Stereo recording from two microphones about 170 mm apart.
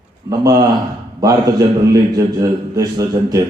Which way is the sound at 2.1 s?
20° right (ahead or behind).